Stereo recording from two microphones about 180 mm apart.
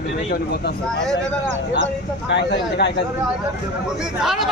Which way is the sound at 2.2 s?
75° left (ahead or behind).